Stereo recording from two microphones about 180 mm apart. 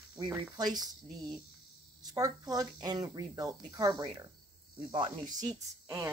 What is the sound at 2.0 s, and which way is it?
Speech, 20° right (ahead or behind).